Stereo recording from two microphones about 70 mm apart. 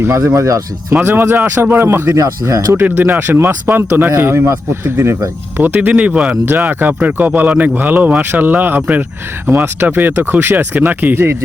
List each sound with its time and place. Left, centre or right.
0.3 s speech: right
1.0 s speech: right
2.1 s speech: right
2.9 s speech: right; by 6.4 s centre
6.4 s speech: right